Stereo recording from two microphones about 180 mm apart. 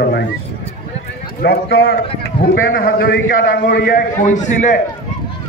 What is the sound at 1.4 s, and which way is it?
A man's voice, 65° left (ahead or behind).